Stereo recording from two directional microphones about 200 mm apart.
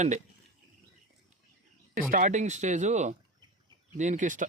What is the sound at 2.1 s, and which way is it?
Speech, 40° right (ahead or behind).